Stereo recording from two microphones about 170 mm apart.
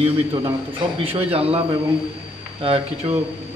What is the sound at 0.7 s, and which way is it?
Speech, 35° right (ahead or behind).